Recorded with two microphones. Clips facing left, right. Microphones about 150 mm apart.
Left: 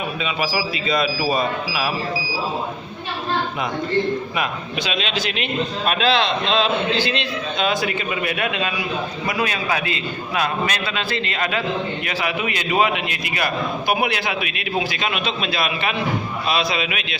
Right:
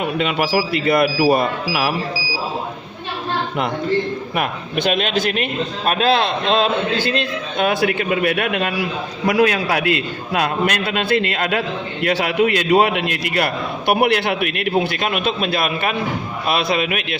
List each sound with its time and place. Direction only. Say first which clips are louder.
0.2 s a man's voice: right 5 dB; 65° right (ahead or behind)
4.4 s a man's voice: right 3 dB; 55° right (ahead or behind)